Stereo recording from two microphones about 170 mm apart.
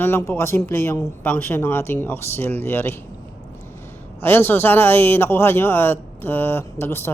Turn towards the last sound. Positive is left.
turn(degrees=15)  # may be behind; listen again after turning